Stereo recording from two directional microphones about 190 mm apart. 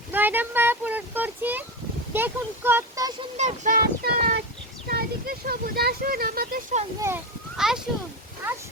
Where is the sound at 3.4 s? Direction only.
40° right (ahead or behind).